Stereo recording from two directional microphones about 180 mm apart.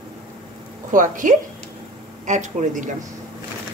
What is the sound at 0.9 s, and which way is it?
Speech, 45° right (ahead or behind).